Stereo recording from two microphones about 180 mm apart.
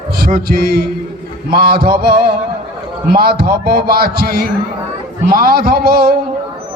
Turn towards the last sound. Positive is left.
turn(degrees=-60)  # may be behind; listen again after turning